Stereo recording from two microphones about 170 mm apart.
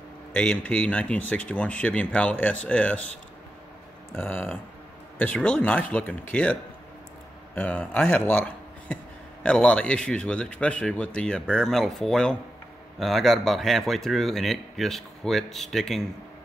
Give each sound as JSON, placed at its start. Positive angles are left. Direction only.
{"t": 0.3, "sound": "speech", "side_deg": 5}
{"t": 4.1, "sound": "speech", "side_deg": 10}